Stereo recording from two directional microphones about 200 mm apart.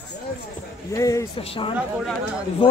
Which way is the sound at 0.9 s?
15° left (ahead or behind).